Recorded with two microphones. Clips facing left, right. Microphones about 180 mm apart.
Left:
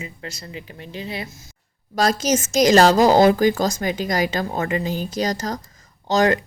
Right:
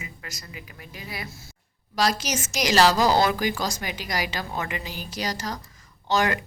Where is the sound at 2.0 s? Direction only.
45° left (ahead or behind).